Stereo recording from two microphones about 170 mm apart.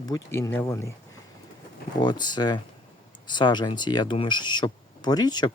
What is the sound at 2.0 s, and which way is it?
Speech, 25° left (ahead or behind).